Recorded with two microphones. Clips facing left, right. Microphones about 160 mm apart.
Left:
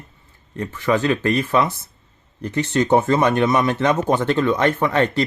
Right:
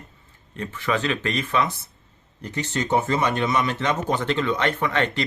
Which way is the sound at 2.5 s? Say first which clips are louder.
Left 6 dB; 55° left (ahead or behind).